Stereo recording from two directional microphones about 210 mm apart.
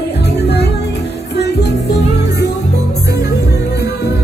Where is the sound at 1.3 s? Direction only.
50° left (ahead or behind).